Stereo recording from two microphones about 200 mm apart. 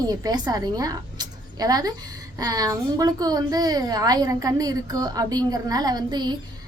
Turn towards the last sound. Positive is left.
turn(degrees=-20)  # may be behind; listen again after turning